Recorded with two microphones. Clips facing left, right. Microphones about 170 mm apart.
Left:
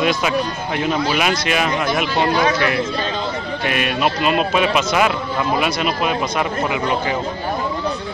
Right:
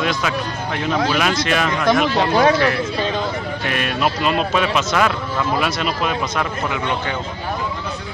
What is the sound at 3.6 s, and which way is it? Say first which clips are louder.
Speech: left 2 dB; 5° left (ahead or behind).